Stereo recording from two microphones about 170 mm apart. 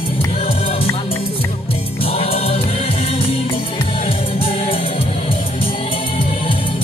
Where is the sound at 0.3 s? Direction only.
35° left (ahead or behind).